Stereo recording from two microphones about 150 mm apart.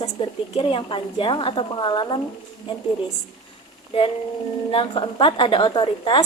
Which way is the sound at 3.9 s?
40° left (ahead or behind).